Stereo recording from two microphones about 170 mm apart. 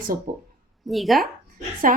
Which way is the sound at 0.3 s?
55° right (ahead or behind).